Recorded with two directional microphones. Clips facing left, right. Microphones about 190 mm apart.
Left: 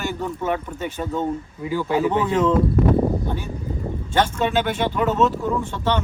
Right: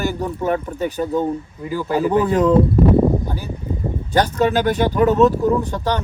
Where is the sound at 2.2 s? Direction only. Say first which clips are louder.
Right 4 dB; 40° right (ahead or behind).